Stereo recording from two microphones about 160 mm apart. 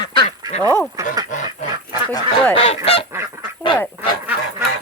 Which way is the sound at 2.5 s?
40° left (ahead or behind).